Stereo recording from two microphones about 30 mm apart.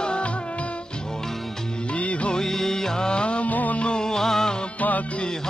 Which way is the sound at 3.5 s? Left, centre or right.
Left.